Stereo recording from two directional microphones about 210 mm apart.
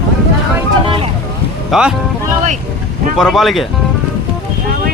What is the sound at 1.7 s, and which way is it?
Speech, 5° right (ahead or behind).